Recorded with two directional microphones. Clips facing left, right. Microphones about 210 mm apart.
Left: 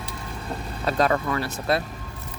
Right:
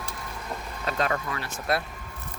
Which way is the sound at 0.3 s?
30° left (ahead or behind).